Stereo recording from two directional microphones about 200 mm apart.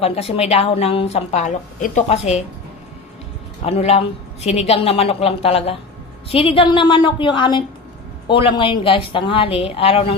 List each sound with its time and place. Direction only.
0.0 s a woman's voice: 30° left (ahead or behind)
3.6 s speech: 30° left (ahead or behind)